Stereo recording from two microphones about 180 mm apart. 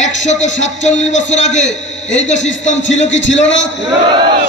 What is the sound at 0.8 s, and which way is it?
Speech, 40° left (ahead or behind).